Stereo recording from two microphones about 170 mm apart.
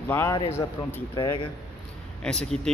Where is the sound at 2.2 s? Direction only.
5° left (ahead or behind).